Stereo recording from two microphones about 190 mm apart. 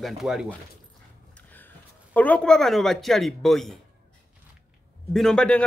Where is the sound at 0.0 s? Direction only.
Centre (ahead or behind).